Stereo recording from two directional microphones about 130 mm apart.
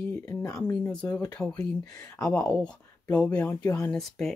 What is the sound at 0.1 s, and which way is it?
Speech, 20° left (ahead or behind).